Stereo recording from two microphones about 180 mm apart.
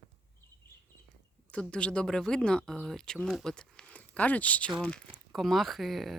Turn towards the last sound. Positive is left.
turn(degrees=0)  # may be behind; listen again after turning